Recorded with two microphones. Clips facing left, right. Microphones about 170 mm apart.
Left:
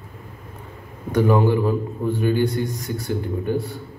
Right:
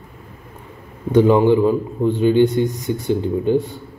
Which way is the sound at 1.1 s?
20° right (ahead or behind).